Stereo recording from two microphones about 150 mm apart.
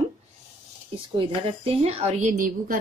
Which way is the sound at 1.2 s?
40° right (ahead or behind).